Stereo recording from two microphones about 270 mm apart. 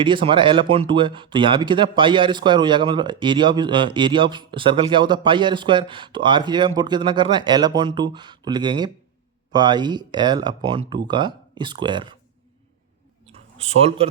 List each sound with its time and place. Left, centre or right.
0.0 s speech: centre
13.6 s speech: right